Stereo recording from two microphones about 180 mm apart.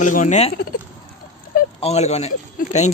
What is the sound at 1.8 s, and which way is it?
A man's voice, 35° left (ahead or behind).